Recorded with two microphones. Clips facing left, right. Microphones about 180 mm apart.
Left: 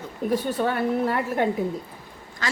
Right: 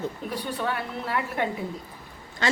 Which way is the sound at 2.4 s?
25° right (ahead or behind).